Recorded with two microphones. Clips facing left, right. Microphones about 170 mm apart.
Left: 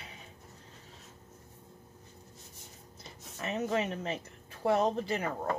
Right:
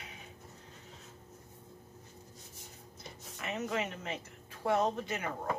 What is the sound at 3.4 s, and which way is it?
Speech, 35° left (ahead or behind).